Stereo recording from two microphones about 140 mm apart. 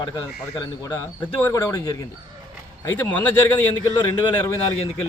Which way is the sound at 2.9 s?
15° left (ahead or behind).